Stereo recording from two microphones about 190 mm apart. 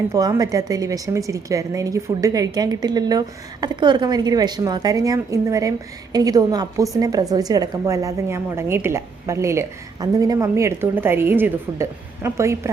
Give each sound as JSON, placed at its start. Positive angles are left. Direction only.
{"t": 0.1, "sound": "a woman's voice", "side_deg": -20}